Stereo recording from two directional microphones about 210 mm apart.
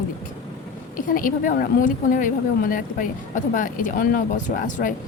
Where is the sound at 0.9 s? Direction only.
40° left (ahead or behind).